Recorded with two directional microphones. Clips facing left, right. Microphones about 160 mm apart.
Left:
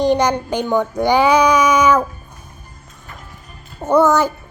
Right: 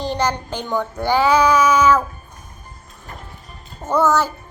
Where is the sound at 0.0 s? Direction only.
15° left (ahead or behind).